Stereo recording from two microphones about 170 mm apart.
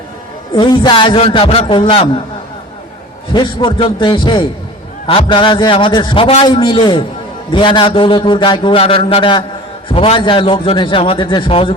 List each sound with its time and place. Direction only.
0.5 s a man's voice: 25° left (ahead or behind)
3.3 s a man's voice: 25° left (ahead or behind)